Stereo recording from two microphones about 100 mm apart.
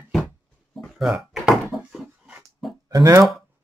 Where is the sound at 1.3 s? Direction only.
Centre (ahead or behind).